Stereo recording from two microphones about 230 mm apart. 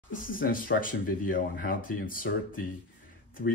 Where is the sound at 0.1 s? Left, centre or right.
Left.